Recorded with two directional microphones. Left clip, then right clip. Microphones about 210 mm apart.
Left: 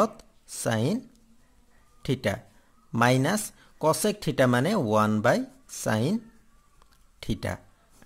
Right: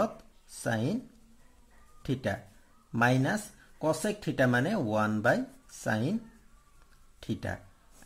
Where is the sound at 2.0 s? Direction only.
35° left (ahead or behind).